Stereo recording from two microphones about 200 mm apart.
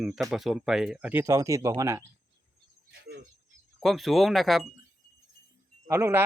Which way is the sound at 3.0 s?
55° right (ahead or behind).